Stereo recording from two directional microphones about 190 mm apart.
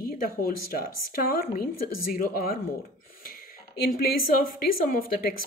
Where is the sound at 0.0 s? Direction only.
50° left (ahead or behind).